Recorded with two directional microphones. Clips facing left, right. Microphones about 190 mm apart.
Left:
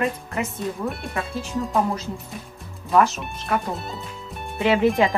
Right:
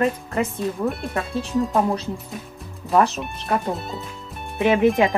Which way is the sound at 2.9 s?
30° right (ahead or behind).